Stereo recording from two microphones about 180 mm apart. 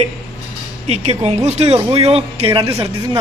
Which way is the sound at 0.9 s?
35° right (ahead or behind).